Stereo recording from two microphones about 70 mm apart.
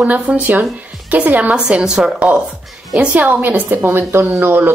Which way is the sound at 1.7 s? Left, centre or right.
Centre.